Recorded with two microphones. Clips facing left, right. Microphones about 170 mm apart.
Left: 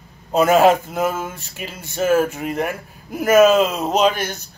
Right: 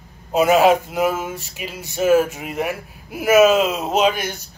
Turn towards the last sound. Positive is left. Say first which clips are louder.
# left 1 dB
turn(degrees=-5)  # may be behind; listen again after turning